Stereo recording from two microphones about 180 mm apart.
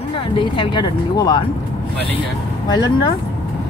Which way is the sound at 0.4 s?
25° left (ahead or behind).